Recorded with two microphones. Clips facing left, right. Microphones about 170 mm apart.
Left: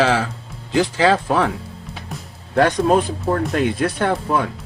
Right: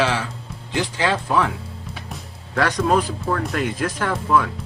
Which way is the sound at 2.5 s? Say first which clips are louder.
Left 4 dB; 35° left (ahead or behind).